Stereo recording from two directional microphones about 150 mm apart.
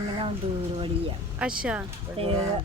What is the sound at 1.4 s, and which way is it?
Speech, 5° right (ahead or behind).